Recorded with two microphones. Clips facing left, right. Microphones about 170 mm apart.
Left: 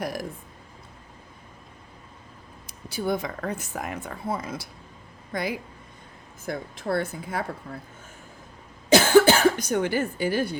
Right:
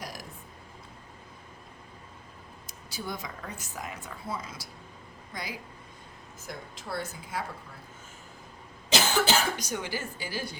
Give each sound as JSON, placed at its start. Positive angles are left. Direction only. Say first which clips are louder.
{"t": 0.0, "sound": "speech", "louder": "left 11 dB", "side_deg": 55}
{"t": 2.6, "sound": "speech", "louder": "left 11 dB", "side_deg": 55}
{"t": 8.9, "sound": "speech", "louder": "left 10 dB", "side_deg": 55}